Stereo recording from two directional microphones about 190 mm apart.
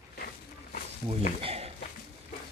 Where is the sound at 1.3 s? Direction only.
30° right (ahead or behind).